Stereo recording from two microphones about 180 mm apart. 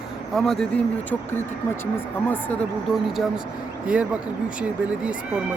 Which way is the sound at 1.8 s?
10° left (ahead or behind).